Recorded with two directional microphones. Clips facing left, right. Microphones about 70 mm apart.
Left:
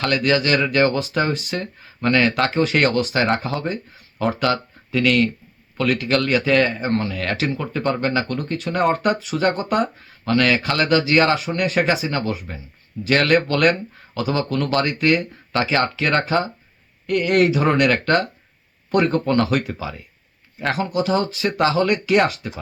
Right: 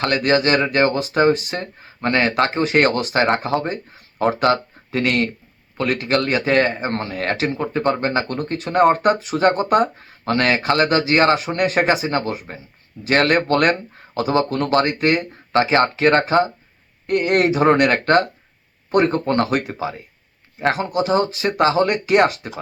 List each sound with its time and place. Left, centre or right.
0.0 s speech: right